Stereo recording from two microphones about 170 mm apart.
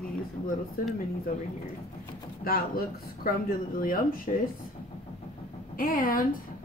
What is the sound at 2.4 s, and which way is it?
Speech, 60° left (ahead or behind).